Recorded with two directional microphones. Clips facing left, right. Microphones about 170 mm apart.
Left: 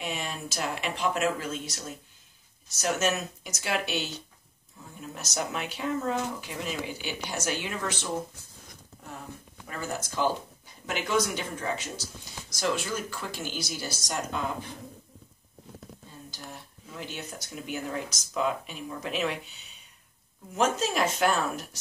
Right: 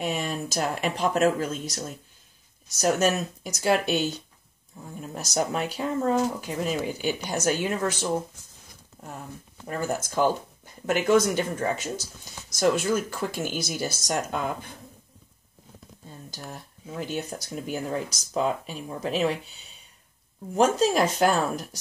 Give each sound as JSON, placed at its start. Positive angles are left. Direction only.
{"t": 0.0, "sound": "speech", "side_deg": -45}
{"t": 9.7, "sound": "speech", "side_deg": -45}
{"t": 17.0, "sound": "speech", "side_deg": -40}
{"t": 20.5, "sound": "speech", "side_deg": -35}